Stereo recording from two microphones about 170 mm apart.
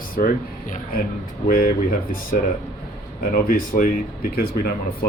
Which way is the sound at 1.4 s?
60° left (ahead or behind).